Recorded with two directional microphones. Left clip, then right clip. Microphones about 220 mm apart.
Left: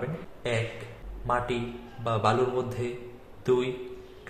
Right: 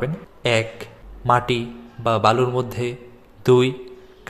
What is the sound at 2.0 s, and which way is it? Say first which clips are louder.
A man's voice: right 8 dB; 35° right (ahead or behind).